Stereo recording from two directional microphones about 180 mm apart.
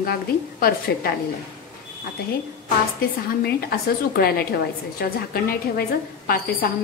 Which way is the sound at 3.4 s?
60° left (ahead or behind).